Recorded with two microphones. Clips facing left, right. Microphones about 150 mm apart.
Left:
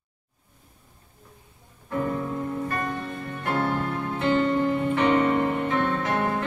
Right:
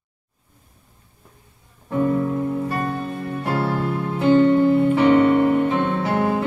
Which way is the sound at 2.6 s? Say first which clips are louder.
Right 5 dB; 10° right (ahead or behind).